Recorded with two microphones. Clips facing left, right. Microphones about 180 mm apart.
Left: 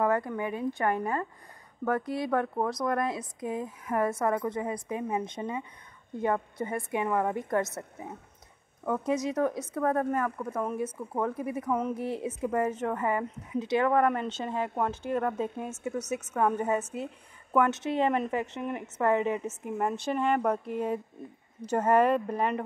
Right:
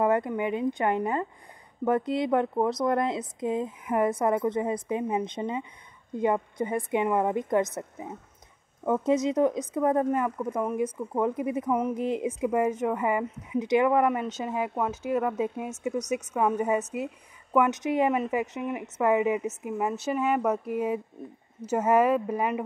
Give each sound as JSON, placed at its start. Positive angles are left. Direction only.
{"t": 0.0, "sound": "speech", "side_deg": -20}